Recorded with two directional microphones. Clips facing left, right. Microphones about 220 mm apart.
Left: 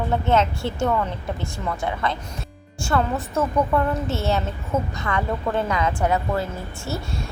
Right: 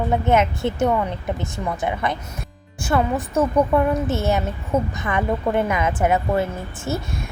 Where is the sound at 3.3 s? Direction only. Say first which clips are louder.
Right 3 dB; 15° right (ahead or behind).